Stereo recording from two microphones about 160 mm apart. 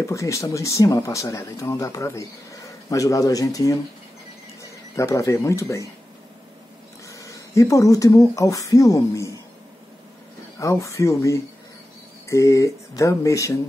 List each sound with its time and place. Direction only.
0.0 s speech: 20° left (ahead or behind)
7.1 s speech: 20° left (ahead or behind)
10.6 s speech: 20° left (ahead or behind)